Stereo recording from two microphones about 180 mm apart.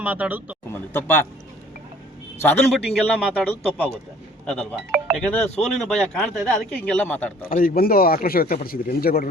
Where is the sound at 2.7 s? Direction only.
Centre (ahead or behind).